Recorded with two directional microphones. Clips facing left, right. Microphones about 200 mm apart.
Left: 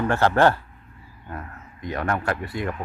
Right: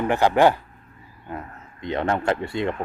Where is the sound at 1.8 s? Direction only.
25° right (ahead or behind).